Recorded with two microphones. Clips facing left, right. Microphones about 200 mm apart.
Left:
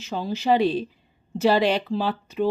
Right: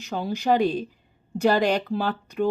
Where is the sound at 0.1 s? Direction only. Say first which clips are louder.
Left 1 dB; centre (ahead or behind).